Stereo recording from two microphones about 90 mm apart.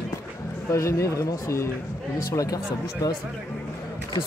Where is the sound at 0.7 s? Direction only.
35° left (ahead or behind).